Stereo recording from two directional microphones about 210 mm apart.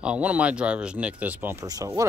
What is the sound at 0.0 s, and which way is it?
Speech, 5° right (ahead or behind).